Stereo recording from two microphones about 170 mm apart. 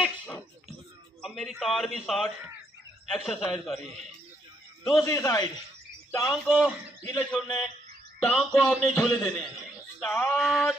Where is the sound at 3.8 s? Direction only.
40° right (ahead or behind).